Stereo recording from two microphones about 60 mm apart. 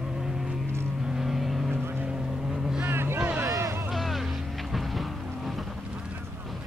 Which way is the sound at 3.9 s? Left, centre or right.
Centre.